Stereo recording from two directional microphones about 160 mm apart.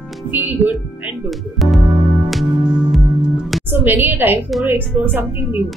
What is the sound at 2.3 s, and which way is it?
Music, 5° right (ahead or behind).